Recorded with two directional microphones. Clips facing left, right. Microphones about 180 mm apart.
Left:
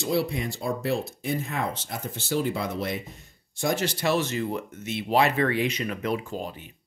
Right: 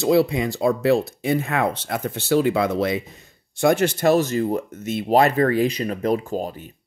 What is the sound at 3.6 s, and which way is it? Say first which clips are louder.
Speech: right 8 dB; 55° right (ahead or behind).